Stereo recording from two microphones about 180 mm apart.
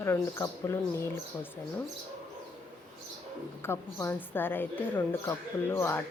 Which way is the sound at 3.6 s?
15° left (ahead or behind).